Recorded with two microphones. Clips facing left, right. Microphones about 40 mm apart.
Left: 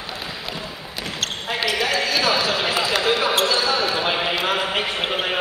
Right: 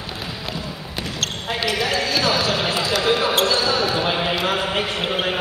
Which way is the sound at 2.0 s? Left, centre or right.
Centre.